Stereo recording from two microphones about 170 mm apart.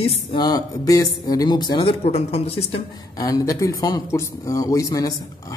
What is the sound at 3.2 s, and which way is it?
Speech, 20° left (ahead or behind).